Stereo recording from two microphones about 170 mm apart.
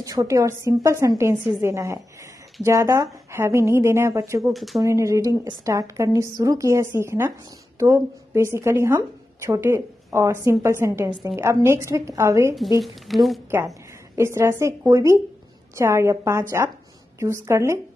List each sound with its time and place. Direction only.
0.0 s a woman's voice: 20° right (ahead or behind)
4.5 s speech: centre (ahead or behind)
4.8 s a woman's voice: 20° right (ahead or behind)
12.8 s speech: centre (ahead or behind)
14.1 s a woman's voice: 15° right (ahead or behind)